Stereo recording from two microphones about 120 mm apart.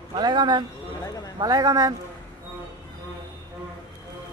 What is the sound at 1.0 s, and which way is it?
Speech, 30° left (ahead or behind).